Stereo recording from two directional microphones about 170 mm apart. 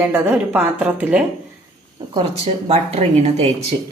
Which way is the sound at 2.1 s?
35° right (ahead or behind).